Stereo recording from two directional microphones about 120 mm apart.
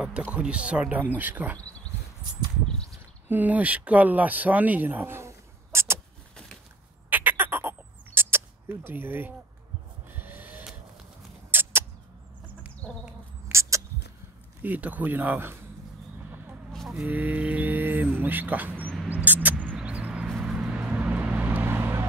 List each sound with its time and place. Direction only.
0.0 s speech: 10° right (ahead or behind)
3.3 s speech: 15° right (ahead or behind)
7.1 s a sound: 15° right (ahead or behind)
11.5 s rodents: 15° right (ahead or behind)
13.5 s a sound: 25° right (ahead or behind)
14.6 s speech: 15° right (ahead or behind)
16.7 s speech: centre (ahead or behind)
19.0 s vehicle: 15° right (ahead or behind)